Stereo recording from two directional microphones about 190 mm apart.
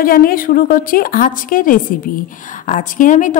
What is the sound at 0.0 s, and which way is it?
A woman's voice, 50° left (ahead or behind).